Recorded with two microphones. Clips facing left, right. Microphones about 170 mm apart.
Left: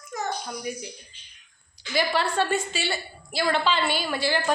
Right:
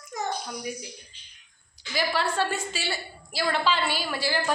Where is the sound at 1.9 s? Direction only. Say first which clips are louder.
Left 2 dB; centre (ahead or behind).